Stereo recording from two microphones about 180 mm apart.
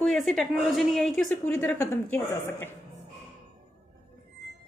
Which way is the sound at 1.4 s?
15° left (ahead or behind).